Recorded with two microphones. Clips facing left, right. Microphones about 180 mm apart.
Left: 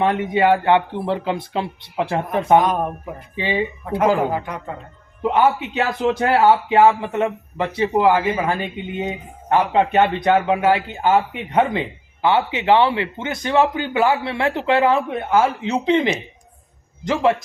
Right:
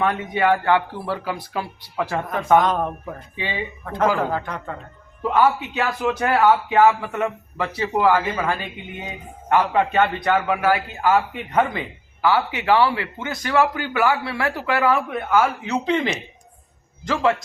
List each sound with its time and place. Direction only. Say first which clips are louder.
0.0 s speech: left 3 dB; 25° left (ahead or behind)